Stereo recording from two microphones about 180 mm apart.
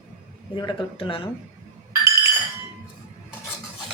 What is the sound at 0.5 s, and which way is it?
Speech, 25° left (ahead or behind).